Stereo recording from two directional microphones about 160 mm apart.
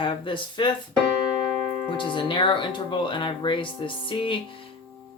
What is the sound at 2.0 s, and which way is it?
Speech, 30° left (ahead or behind).